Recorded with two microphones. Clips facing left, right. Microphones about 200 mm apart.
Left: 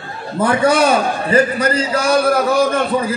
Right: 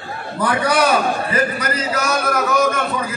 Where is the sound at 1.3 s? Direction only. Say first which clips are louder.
Left 6 dB; 30° left (ahead or behind).